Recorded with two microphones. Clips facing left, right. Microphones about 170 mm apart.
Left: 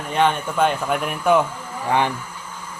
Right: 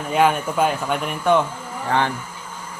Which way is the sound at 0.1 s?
5° right (ahead or behind).